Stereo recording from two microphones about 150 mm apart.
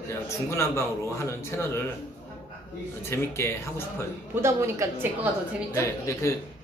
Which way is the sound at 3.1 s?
15° left (ahead or behind).